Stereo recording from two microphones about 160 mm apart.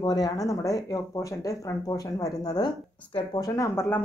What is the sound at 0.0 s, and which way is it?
Speech, 25° left (ahead or behind).